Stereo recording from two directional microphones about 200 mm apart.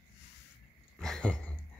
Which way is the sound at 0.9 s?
5° left (ahead or behind).